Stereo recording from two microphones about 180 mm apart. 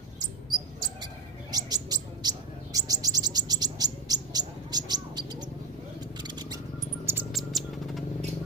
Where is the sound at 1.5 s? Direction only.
20° right (ahead or behind).